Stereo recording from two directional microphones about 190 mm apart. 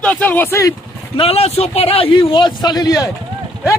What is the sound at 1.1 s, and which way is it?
A man's voice, 30° left (ahead or behind).